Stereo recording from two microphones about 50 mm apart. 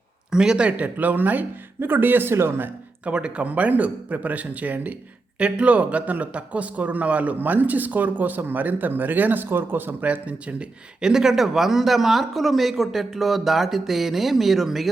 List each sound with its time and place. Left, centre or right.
0.3 s a man's voice: centre; by 2.6 s right
3.0 s a man's voice: right
10.0 s speech: right
11.0 s speech: centre